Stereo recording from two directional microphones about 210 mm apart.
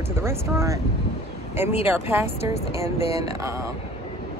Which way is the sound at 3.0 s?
30° left (ahead or behind).